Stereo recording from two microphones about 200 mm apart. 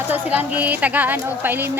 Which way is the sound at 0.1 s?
10° right (ahead or behind).